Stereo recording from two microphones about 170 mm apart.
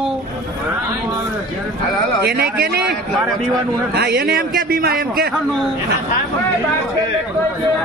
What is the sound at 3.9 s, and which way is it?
A man's voice, 65° right (ahead or behind).